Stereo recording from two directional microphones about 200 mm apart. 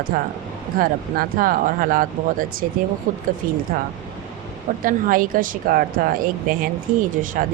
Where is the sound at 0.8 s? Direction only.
45° right (ahead or behind).